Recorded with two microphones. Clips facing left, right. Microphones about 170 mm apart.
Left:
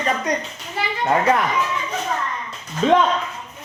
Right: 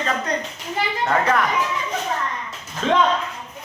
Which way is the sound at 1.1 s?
20° left (ahead or behind).